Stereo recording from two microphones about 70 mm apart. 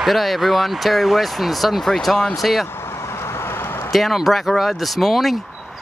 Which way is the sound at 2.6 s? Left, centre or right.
Left.